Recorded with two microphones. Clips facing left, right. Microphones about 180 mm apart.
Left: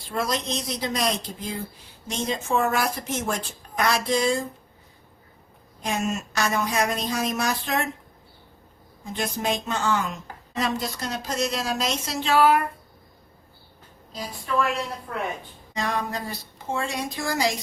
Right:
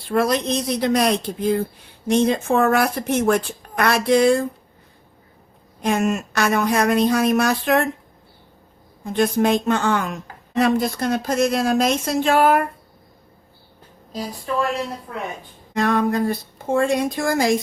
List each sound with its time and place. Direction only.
0.1 s speech: 60° right (ahead or behind)
5.8 s speech: 60° right (ahead or behind)
9.0 s speech: 60° right (ahead or behind)
15.7 s speech: 55° right (ahead or behind)